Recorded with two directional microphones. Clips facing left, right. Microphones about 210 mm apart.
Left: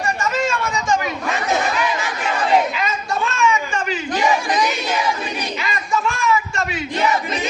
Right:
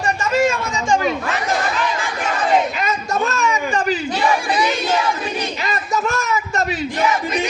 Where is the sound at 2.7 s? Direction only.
45° right (ahead or behind).